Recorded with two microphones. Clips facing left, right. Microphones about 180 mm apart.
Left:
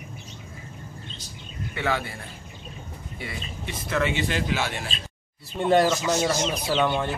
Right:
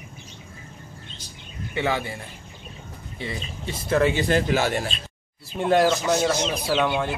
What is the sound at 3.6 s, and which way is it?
Speech, 35° right (ahead or behind).